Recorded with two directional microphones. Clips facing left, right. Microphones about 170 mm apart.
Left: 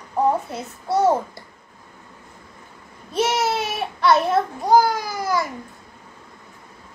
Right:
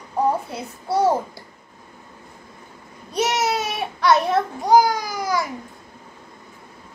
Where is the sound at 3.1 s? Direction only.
Centre (ahead or behind).